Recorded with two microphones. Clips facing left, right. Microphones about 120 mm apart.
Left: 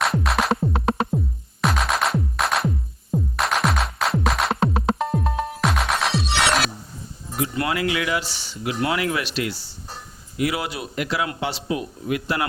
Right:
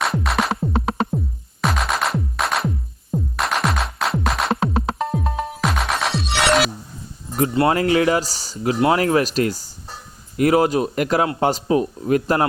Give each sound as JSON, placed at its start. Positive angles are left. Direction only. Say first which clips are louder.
{"t": 0.0, "sound": "music", "louder": "right 1 dB", "side_deg": 0}
{"t": 7.7, "sound": "speech", "louder": "right 7 dB", "side_deg": -40}